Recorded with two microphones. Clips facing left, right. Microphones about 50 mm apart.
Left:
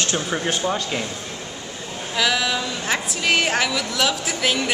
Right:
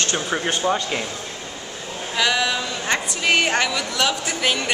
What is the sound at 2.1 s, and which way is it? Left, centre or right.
A woman's voice, centre.